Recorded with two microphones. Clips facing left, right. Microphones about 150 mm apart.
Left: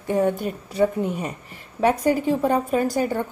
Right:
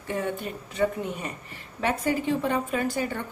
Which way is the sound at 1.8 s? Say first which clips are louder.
Left 7 dB; 40° left (ahead or behind).